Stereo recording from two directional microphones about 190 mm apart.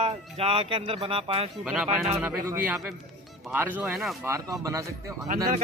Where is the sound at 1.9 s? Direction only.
10° right (ahead or behind).